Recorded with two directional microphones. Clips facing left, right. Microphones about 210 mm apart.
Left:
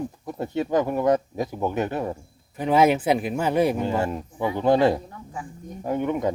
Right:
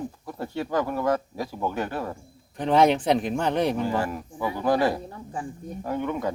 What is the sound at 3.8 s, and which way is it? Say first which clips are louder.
Speech: left 2 dB; 25° left (ahead or behind).